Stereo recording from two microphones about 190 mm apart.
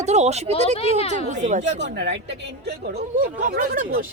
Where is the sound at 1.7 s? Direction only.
65° right (ahead or behind).